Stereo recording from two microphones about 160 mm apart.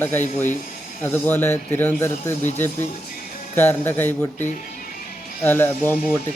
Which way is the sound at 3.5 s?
10° left (ahead or behind).